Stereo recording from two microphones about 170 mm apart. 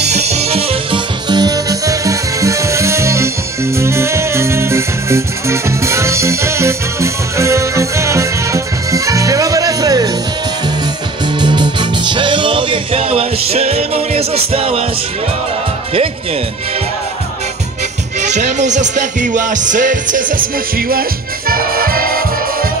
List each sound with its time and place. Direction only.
0.0 s music: 40° right (ahead or behind); by 10.1 s 20° right (ahead or behind)
11.3 s music: 25° right (ahead or behind)
18.2 s music: 45° right (ahead or behind)